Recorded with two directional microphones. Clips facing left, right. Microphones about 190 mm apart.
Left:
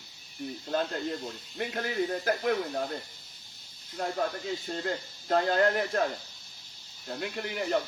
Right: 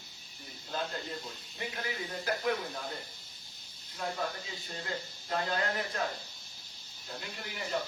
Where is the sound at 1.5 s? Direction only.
55° left (ahead or behind).